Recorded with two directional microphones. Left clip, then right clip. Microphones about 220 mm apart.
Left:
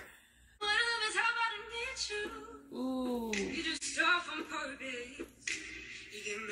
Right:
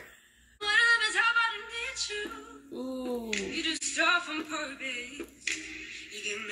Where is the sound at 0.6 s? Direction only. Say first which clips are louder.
Right 8 dB; 35° right (ahead or behind).